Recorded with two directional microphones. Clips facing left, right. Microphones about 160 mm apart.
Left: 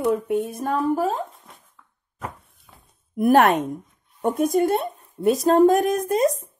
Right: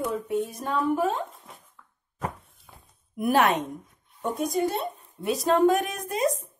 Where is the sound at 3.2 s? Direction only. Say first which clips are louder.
Left 6 dB; 50° left (ahead or behind).